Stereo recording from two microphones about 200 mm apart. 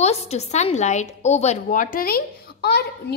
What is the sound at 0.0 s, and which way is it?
A woman's voice, 30° left (ahead or behind).